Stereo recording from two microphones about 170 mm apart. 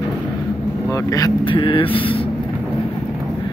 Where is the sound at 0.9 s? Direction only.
20° left (ahead or behind).